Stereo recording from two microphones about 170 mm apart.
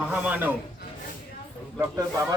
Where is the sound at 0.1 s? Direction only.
10° right (ahead or behind).